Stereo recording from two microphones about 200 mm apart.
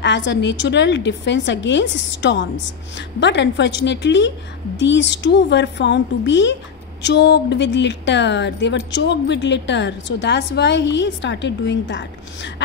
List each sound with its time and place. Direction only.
0.0 s a woman's voice: 60° left (ahead or behind)